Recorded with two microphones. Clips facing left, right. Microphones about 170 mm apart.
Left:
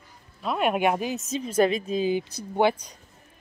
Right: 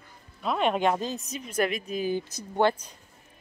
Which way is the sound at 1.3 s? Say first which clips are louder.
Left 7 dB; 25° left (ahead or behind).